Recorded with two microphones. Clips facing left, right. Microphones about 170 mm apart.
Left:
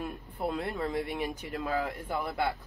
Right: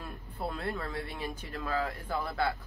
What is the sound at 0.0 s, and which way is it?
Speech, 20° left (ahead or behind).